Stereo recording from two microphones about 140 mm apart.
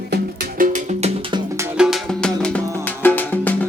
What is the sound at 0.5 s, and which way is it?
Music, 65° right (ahead or behind).